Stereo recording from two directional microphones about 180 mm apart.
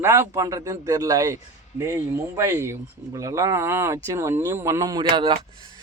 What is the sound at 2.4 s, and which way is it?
Speech, 15° right (ahead or behind).